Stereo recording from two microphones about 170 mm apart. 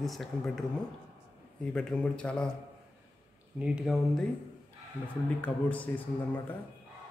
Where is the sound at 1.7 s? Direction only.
5° left (ahead or behind).